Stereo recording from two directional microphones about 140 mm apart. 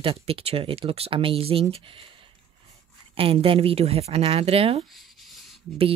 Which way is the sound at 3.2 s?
40° right (ahead or behind).